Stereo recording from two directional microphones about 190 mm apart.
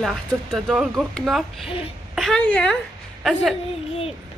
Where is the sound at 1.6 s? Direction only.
30° left (ahead or behind).